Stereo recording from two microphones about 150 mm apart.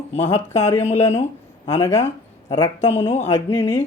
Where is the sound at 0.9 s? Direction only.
45° left (ahead or behind).